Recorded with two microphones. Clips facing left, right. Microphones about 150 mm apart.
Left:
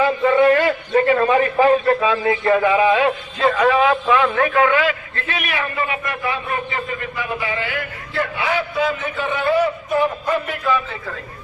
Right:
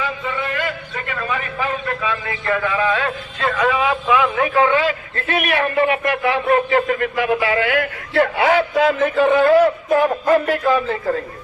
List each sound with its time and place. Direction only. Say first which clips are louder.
0.0 s a sound: left 10 dB; 45° left (ahead or behind)
0.9 s a man's voice: left 14 dB; 35° left (ahead or behind); by 4.4 s 10° right (ahead or behind)
4.4 s a man's voice: even; 25° right (ahead or behind)
5.3 s a man's voice: right 6 dB; 60° right (ahead or behind); by 10.9 s 45° right (ahead or behind)